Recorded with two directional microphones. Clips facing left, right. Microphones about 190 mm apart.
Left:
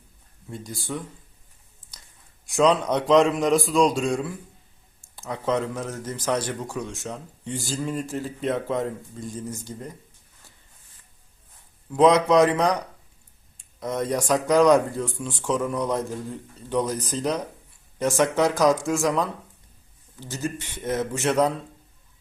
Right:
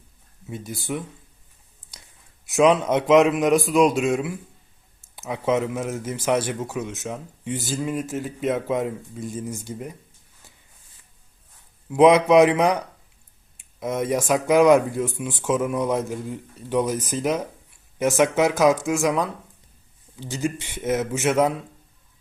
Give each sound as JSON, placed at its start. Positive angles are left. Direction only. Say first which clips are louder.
{"t": 2.5, "sound": "speech", "louder": "right 2 dB", "side_deg": -5}
{"t": 3.7, "sound": "speech", "louder": "right 2 dB", "side_deg": -20}
{"t": 4.9, "sound": "a sound", "louder": "right 2 dB", "side_deg": -5}
{"t": 5.7, "sound": "speech", "louder": "right 4 dB", "side_deg": -10}
{"t": 11.9, "sound": "speech", "louder": "right 3 dB", "side_deg": -10}
{"t": 13.7, "sound": "speech", "louder": "right 2 dB", "side_deg": -5}
{"t": 20.1, "sound": "speech", "louder": "right 4 dB", "side_deg": -10}